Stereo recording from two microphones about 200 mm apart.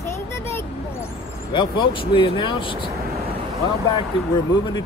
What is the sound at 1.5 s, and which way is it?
Speech, 25° left (ahead or behind).